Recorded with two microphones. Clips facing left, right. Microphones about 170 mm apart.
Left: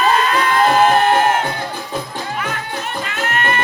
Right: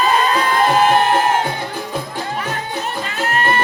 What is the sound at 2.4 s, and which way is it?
Music, 35° right (ahead or behind).